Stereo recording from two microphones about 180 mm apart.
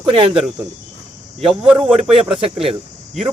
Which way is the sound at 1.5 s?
5° right (ahead or behind).